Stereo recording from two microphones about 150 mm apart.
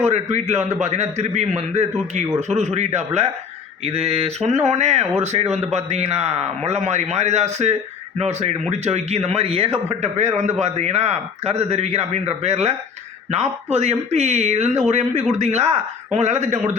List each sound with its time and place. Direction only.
0.0 s speech: 50° right (ahead or behind)